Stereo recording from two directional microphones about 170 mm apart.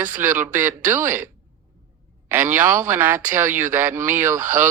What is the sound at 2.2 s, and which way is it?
Speech, 15° right (ahead or behind).